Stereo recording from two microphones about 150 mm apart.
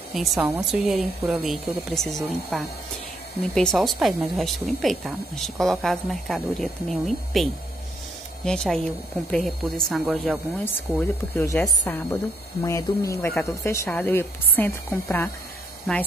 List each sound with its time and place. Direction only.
0.1 s a woman's voice: centre (ahead or behind)
8.5 s a woman's voice: 5° left (ahead or behind)
10.6 s a woman's voice: 15° left (ahead or behind)